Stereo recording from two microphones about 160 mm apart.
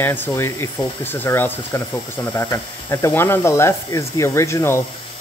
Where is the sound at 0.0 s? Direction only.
15° left (ahead or behind).